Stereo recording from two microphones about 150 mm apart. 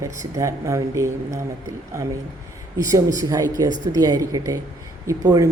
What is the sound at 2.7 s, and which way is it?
Speech, 20° right (ahead or behind).